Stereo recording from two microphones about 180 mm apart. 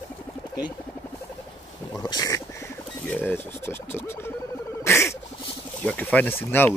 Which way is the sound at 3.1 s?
10° left (ahead or behind).